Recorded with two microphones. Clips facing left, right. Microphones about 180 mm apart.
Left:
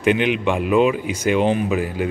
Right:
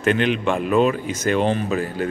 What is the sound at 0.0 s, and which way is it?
Speech, 15° left (ahead or behind).